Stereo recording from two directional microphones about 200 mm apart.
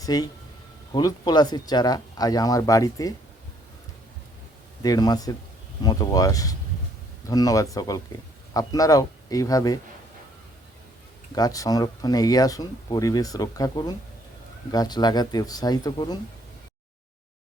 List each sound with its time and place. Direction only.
0.0 s speech: 20° left (ahead or behind)
4.8 s speech: 20° left (ahead or behind)
11.3 s speech: 20° left (ahead or behind)